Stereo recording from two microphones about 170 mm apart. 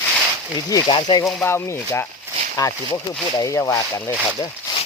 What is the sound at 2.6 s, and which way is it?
Speech, 20° left (ahead or behind).